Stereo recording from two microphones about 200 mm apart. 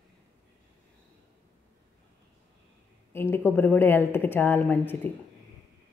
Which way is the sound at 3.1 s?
10° left (ahead or behind).